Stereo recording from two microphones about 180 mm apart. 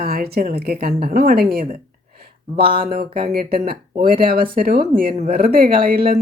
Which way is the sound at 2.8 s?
55° right (ahead or behind).